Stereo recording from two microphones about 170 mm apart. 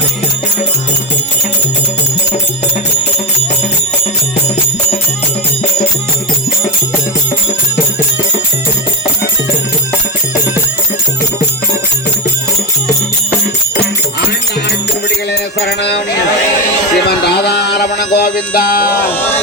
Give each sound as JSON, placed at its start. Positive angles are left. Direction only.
{"t": 15.6, "sound": "music", "side_deg": 85}
{"t": 17.1, "sound": "music", "side_deg": 70}